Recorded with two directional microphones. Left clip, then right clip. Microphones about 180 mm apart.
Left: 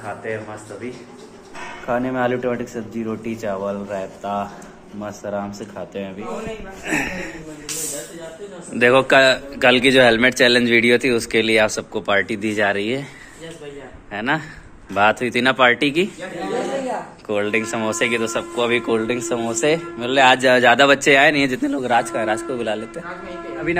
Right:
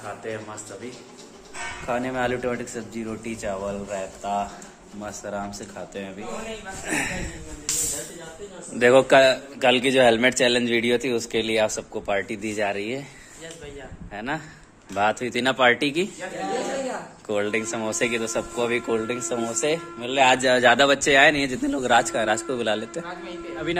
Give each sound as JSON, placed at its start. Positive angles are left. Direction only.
{"t": 0.2, "sound": "speech", "side_deg": -15}
{"t": 1.9, "sound": "speech", "side_deg": -10}
{"t": 8.7, "sound": "speech", "side_deg": -10}
{"t": 14.1, "sound": "speech", "side_deg": 0}
{"t": 17.3, "sound": "speech", "side_deg": -15}
{"t": 21.6, "sound": "speech", "side_deg": -30}